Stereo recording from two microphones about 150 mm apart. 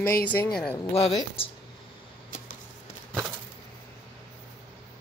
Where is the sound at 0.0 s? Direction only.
10° left (ahead or behind).